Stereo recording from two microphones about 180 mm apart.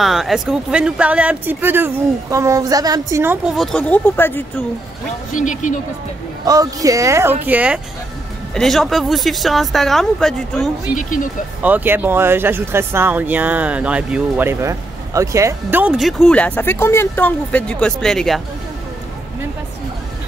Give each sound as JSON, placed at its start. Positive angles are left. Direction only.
{"t": 0.0, "sound": "speech", "side_deg": 0}
{"t": 3.5, "sound": "speech", "side_deg": 5}
{"t": 5.3, "sound": "speech", "side_deg": 45}
{"t": 6.4, "sound": "speech", "side_deg": -20}
{"t": 11.0, "sound": "speech", "side_deg": 45}
{"t": 11.6, "sound": "speech", "side_deg": -10}